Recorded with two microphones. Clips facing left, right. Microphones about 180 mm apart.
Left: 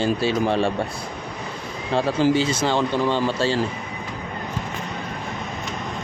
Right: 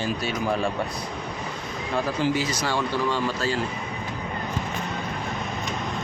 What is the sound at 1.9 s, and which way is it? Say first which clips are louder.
Speech: left 5 dB; 30° left (ahead or behind).